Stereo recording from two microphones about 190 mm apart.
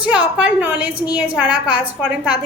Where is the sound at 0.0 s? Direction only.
5° right (ahead or behind).